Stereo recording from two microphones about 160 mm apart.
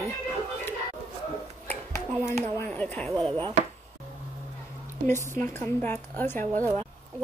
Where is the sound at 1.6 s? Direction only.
15° left (ahead or behind).